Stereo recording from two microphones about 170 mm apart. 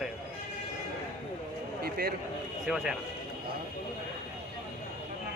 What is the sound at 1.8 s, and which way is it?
Speech, 65° right (ahead or behind).